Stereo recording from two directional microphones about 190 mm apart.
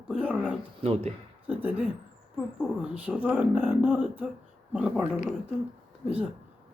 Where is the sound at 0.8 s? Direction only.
35° right (ahead or behind).